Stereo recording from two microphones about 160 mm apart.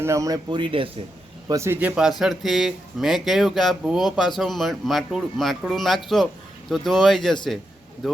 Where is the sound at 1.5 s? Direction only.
15° right (ahead or behind).